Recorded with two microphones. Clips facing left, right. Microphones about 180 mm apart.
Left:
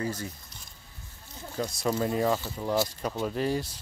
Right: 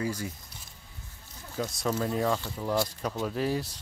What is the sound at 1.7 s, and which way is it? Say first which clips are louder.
Speech: left 2 dB; 5° left (ahead or behind).